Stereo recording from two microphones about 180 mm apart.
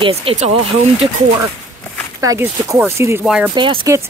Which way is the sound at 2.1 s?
20° right (ahead or behind).